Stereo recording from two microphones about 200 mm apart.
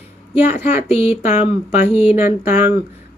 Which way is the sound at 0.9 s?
30° left (ahead or behind).